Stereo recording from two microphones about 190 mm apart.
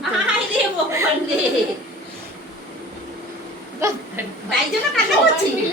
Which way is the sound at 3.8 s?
15° right (ahead or behind).